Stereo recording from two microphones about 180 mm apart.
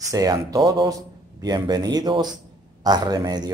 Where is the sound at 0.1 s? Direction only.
20° right (ahead or behind).